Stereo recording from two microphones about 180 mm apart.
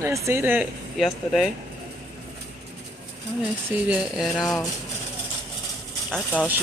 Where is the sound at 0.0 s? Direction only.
15° right (ahead or behind).